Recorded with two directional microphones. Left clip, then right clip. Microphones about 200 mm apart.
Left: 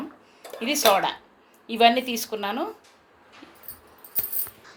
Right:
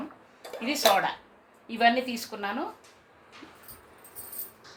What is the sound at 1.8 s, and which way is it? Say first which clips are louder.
Speech: left 5 dB; 50° left (ahead or behind).